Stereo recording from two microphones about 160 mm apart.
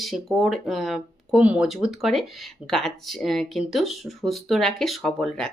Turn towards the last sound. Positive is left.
turn(degrees=5)  # may be behind; listen again after turning